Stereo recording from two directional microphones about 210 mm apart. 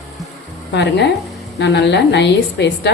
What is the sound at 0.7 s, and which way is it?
A woman's voice, 55° left (ahead or behind).